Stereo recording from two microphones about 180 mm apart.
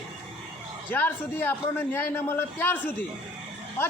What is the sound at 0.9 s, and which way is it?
A man's voice, 10° left (ahead or behind).